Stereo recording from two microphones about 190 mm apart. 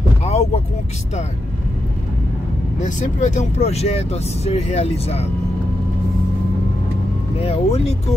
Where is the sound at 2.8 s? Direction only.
40° left (ahead or behind).